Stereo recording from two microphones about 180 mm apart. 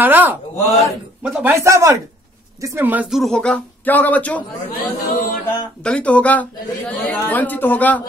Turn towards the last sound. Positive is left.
turn(degrees=10)  # may be behind; listen again after turning